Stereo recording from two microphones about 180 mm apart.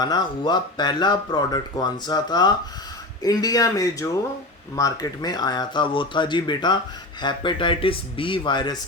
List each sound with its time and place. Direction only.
0.0 s speech: 25° left (ahead or behind)